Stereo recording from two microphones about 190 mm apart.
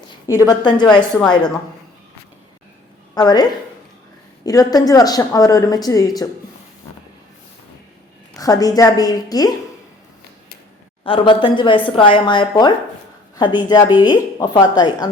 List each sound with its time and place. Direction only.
0.3 s speech: 20° left (ahead or behind)
3.2 s speech: 20° left (ahead or behind)
4.4 s speech: 20° left (ahead or behind)
8.4 s speech: 20° left (ahead or behind)
11.0 s speech: 25° left (ahead or behind)